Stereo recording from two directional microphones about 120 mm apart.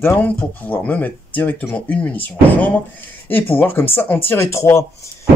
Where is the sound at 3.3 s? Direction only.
15° left (ahead or behind).